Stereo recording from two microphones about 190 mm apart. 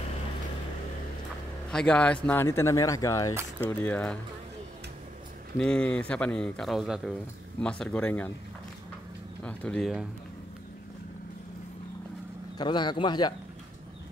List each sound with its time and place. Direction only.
1.7 s a man's voice: 5° left (ahead or behind)
5.6 s a man's voice: 5° left (ahead or behind)
9.4 s a man's voice: 5° left (ahead or behind)
12.5 s speech: 25° left (ahead or behind)